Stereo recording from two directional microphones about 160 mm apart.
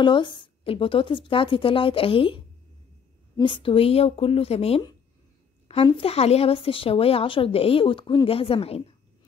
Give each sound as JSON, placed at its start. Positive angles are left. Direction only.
{"t": 0.0, "sound": "speech", "side_deg": 30}